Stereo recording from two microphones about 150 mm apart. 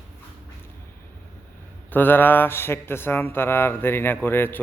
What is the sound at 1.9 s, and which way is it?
Speech, 15° left (ahead or behind).